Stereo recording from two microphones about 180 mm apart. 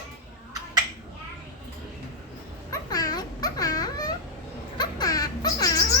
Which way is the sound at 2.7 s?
20° left (ahead or behind).